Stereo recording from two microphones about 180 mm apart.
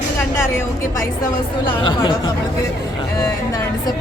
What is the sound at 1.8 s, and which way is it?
Speech, 25° left (ahead or behind).